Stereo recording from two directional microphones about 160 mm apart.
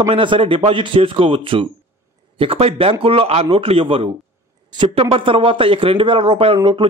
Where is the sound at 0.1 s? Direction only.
35° right (ahead or behind).